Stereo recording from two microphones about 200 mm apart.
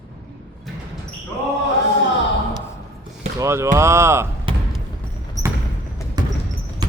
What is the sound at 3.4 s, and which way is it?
Speech, 15° right (ahead or behind).